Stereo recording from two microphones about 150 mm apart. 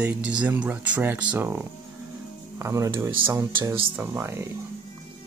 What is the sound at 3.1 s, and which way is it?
Speech, 35° right (ahead or behind).